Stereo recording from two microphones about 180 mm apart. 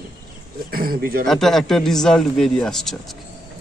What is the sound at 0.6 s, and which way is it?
Speech, 55° right (ahead or behind).